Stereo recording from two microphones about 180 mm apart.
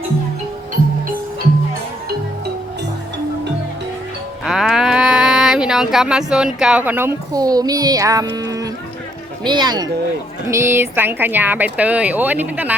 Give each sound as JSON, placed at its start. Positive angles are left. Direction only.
{"t": 4.4, "sound": "speech", "side_deg": 0}
{"t": 8.4, "sound": "a sound", "side_deg": -20}
{"t": 9.4, "sound": "speech", "side_deg": -25}